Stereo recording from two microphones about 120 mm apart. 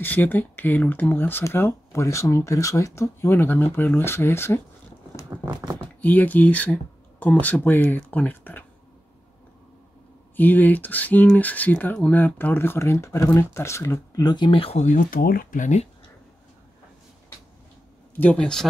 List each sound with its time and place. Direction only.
0.0 s speech: 15° left (ahead or behind)
5.5 s speech: 35° right (ahead or behind)
5.9 s speech: 15° left (ahead or behind)
10.3 s speech: 15° left (ahead or behind); by 14.8 s 50° left (ahead or behind)
15.5 s speech: 80° left
18.2 s speech: 10° left (ahead or behind)